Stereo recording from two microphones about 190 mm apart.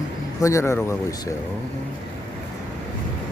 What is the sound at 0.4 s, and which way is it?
Speech, 15° left (ahead or behind).